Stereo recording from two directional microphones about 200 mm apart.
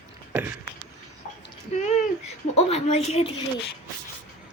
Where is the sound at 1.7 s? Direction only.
35° left (ahead or behind).